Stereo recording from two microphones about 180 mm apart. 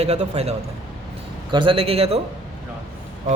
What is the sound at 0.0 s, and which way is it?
Speech, 35° right (ahead or behind).